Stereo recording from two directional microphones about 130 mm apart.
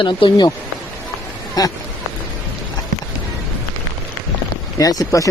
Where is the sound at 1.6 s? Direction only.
30° left (ahead or behind).